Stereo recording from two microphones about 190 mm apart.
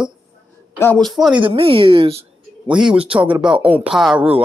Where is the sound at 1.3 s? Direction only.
25° right (ahead or behind).